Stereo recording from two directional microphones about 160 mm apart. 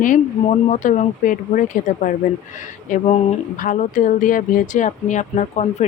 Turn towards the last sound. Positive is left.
turn(degrees=45)  # may be behind; listen again after turning